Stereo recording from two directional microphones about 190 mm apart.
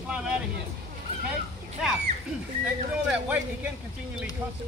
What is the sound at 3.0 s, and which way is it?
Speech, 10° right (ahead or behind).